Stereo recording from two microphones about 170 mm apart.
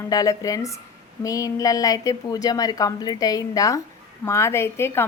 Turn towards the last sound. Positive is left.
turn(degrees=15)  # may be behind; listen again after turning